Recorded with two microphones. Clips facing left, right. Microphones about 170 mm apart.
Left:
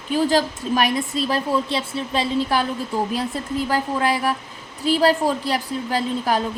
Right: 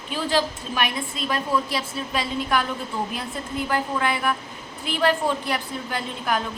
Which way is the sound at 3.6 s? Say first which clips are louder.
Left 2 dB; 35° left (ahead or behind).